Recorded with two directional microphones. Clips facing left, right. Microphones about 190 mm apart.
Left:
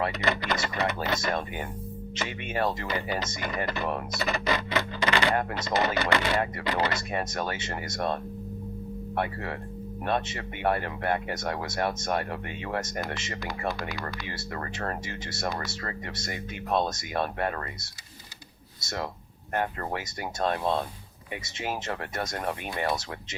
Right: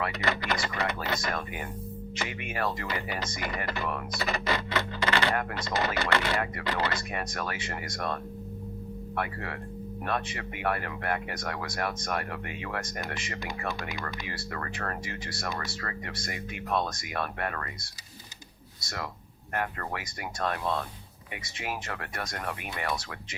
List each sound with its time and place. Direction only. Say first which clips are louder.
0.0 s speech: left 2 dB; 25° left (ahead or behind)
4.7 s a sound: left 2 dB; 15° left (ahead or behind)
5.4 s speech: left 3 dB; 25° left (ahead or behind)